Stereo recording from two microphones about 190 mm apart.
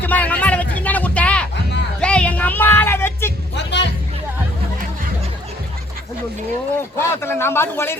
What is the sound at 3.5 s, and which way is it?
Speech, 65° left (ahead or behind).